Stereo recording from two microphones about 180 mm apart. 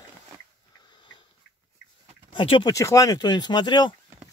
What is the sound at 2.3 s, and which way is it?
Speech, 25° left (ahead or behind).